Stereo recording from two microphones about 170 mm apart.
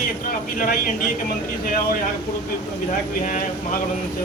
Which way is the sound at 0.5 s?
55° left (ahead or behind).